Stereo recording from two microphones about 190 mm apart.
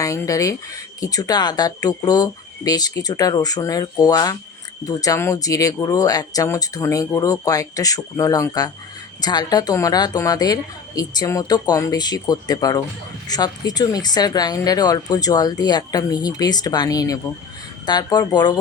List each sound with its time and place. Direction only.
0.0 s speech: 15° left (ahead or behind)